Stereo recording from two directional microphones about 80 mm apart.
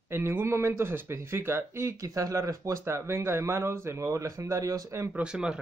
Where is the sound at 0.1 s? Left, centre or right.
Right.